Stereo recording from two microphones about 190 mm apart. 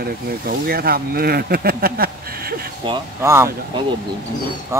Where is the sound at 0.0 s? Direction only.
50° right (ahead or behind).